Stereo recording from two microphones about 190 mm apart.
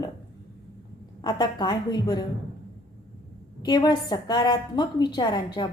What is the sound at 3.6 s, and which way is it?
A woman's voice, 20° left (ahead or behind).